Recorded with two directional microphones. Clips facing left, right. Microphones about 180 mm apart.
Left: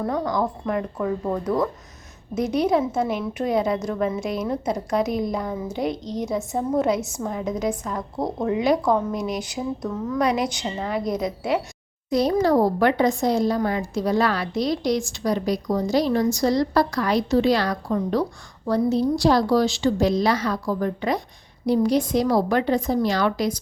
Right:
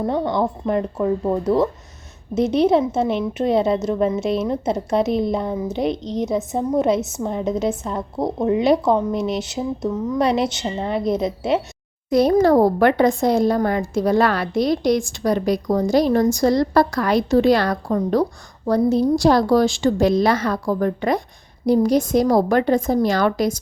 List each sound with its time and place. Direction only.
0.0 s a woman's voice: 25° right (ahead or behind)
12.1 s a woman's voice: 55° right (ahead or behind)